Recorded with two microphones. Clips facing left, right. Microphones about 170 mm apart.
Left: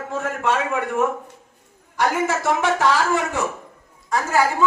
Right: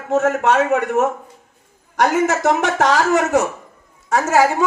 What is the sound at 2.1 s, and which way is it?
Speech, 75° right (ahead or behind).